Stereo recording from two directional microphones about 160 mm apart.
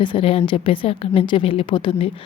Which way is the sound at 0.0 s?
30° left (ahead or behind).